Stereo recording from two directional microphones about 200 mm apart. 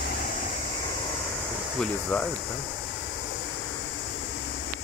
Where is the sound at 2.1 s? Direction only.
10° left (ahead or behind).